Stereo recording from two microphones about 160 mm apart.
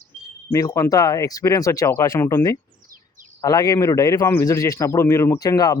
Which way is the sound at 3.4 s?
25° left (ahead or behind).